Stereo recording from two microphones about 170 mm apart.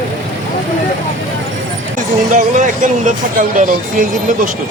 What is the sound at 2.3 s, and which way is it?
Speech, 50° right (ahead or behind).